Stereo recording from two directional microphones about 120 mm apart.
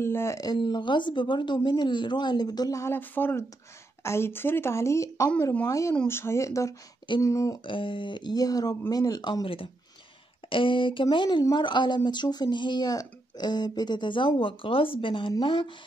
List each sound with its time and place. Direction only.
0.0 s speech: 20° left (ahead or behind)
7.6 s speech: 45° left (ahead or behind)